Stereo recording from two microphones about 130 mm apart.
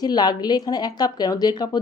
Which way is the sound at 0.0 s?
30° left (ahead or behind).